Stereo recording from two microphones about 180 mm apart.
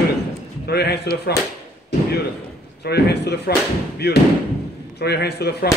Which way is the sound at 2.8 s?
65° left (ahead or behind).